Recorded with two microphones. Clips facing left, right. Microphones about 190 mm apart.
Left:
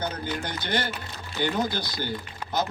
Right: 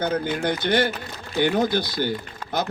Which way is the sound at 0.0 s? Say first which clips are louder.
Right 7 dB; 55° right (ahead or behind).